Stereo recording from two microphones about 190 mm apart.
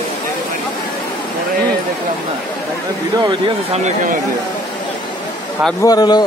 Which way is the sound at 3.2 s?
25° right (ahead or behind).